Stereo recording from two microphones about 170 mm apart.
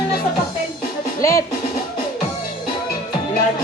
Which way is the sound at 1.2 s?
20° left (ahead or behind).